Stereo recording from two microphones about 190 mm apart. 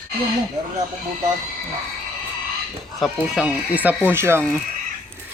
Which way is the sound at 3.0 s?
Centre (ahead or behind).